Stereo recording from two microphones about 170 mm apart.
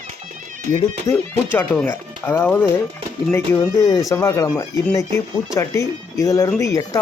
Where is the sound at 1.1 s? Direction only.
15° left (ahead or behind).